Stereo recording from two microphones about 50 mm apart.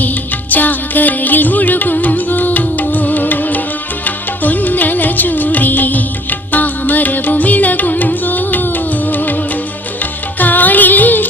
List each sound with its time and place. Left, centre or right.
0.5 s music: left
10.3 s music: left